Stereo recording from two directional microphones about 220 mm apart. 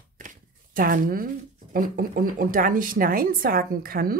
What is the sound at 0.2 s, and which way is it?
Speech, 40° right (ahead or behind).